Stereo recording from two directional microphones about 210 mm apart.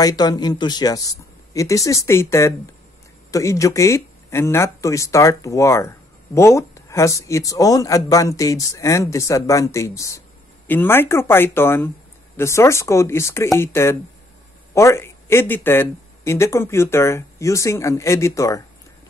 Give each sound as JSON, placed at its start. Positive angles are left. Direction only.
{"t": 0.0, "sound": "speech", "side_deg": 20}